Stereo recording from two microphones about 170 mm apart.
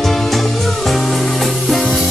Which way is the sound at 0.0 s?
Centre (ahead or behind).